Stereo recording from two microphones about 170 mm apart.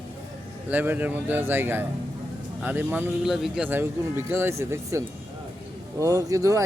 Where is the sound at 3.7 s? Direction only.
15° right (ahead or behind).